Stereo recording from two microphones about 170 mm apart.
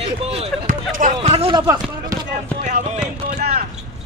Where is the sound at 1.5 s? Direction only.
20° right (ahead or behind).